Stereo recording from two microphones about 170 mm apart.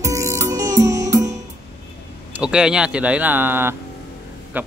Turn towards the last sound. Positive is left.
turn(degrees=-10)  # may be behind; listen again after turning